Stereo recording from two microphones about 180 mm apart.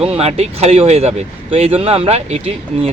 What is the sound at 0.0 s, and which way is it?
Speech, 35° right (ahead or behind).